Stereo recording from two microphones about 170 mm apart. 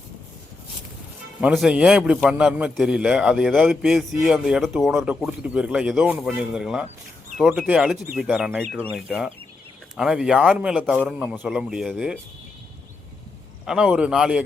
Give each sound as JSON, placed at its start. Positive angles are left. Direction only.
{"t": 1.4, "sound": "a man's voice", "side_deg": -5}
{"t": 13.7, "sound": "a man's voice", "side_deg": -5}